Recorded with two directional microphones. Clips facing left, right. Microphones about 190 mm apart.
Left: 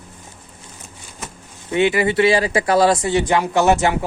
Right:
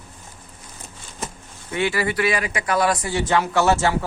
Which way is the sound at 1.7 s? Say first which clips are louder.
Left 6 dB; 20° left (ahead or behind).